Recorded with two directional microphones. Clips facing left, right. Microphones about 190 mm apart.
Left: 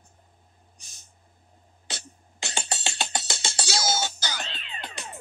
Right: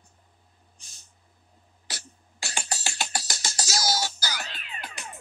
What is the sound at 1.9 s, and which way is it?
Music, 25° left (ahead or behind).